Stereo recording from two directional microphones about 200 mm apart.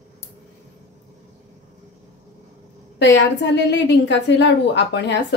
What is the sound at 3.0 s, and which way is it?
A woman's voice, 60° left (ahead or behind).